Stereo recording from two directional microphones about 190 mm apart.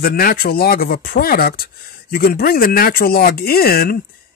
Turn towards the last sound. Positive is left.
turn(degrees=50)  # may be behind; listen again after turning